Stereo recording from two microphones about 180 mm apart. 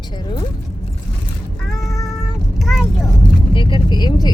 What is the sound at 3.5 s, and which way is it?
Vehicle, 25° left (ahead or behind).